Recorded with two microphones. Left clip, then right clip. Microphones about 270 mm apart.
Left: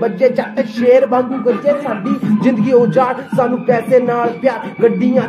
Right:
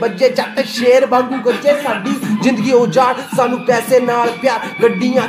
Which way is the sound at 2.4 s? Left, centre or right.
Centre.